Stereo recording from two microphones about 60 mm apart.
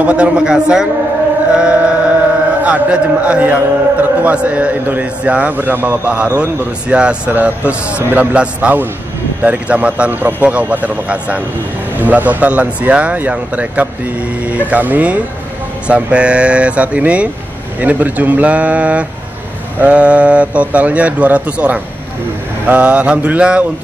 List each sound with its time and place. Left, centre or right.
0.0 s a man's voice: centre
1.5 s chant: centre
2.6 s a man's voice: right